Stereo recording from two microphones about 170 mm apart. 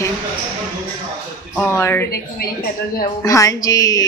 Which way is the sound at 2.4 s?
60° left (ahead or behind).